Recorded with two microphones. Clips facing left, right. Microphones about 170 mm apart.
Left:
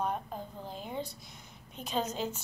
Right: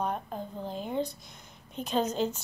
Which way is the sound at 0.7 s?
Centre (ahead or behind).